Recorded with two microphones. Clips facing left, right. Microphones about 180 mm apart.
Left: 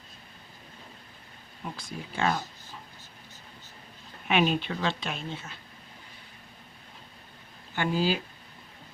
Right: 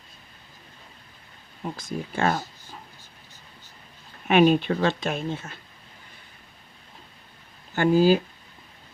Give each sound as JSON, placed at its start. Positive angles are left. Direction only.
{"t": 1.7, "sound": "speech", "side_deg": -45}
{"t": 4.3, "sound": "speech", "side_deg": -50}
{"t": 7.8, "sound": "speech", "side_deg": -45}